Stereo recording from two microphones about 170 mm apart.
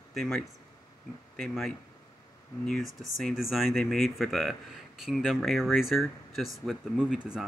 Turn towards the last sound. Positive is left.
turn(degrees=-5)  # may be behind; listen again after turning